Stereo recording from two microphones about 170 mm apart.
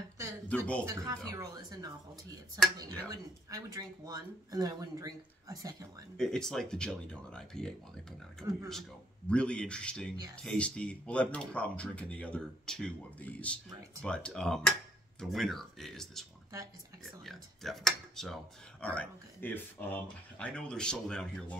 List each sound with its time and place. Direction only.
0.5 s speech: 5° left (ahead or behind)
0.8 s speech: 20° right (ahead or behind)
6.1 s speech: 5° left (ahead or behind)
9.3 s speech: 5° left (ahead or behind)